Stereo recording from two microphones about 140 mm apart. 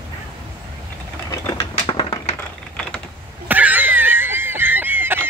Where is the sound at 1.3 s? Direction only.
25° left (ahead or behind).